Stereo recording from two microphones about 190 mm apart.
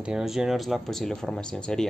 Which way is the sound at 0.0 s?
5° right (ahead or behind).